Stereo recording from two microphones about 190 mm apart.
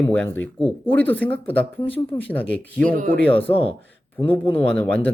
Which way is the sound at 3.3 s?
30° left (ahead or behind).